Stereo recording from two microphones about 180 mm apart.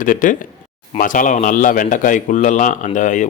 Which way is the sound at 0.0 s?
45° left (ahead or behind).